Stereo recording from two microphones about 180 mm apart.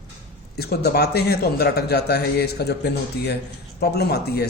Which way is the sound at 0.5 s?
60° left (ahead or behind).